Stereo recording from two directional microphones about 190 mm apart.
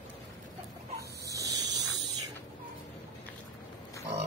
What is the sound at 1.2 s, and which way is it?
Squeal, 15° right (ahead or behind).